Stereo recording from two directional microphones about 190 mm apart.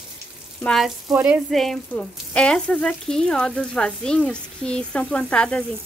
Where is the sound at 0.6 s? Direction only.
5° left (ahead or behind).